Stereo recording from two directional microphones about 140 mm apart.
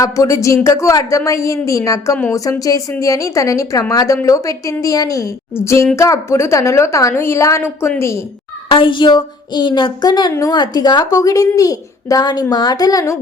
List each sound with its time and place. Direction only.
0.0 s a woman's voice: 25° left (ahead or behind)
8.7 s a woman's voice: 35° left (ahead or behind)